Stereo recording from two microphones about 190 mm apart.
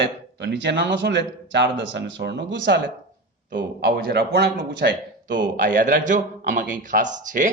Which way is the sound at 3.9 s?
55° right (ahead or behind).